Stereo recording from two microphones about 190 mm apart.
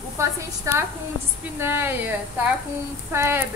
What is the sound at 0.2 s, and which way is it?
A woman's voice, 15° right (ahead or behind).